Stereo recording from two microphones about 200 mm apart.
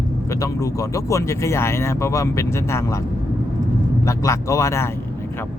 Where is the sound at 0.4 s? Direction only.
15° left (ahead or behind).